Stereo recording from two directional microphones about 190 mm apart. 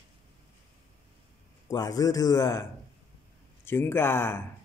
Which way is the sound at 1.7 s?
20° left (ahead or behind).